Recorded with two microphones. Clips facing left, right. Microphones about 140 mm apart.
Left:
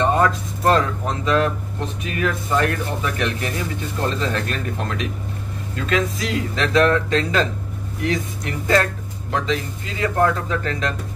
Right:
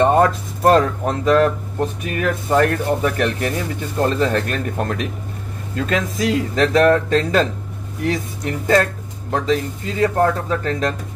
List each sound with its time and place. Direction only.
0.0 s speech: 45° right (ahead or behind)